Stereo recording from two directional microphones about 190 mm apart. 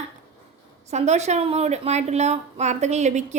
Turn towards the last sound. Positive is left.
turn(degrees=-35)  # may be behind; listen again after turning